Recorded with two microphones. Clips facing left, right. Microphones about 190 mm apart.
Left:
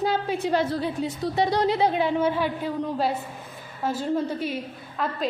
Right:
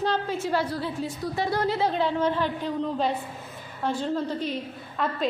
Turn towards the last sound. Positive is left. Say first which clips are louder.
# even
turn(degrees=5)  # may be behind; listen again after turning